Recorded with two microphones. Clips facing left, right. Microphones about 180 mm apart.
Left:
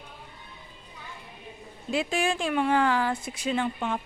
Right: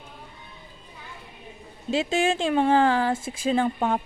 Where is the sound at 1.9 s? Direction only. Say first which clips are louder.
Right 4 dB; 25° right (ahead or behind).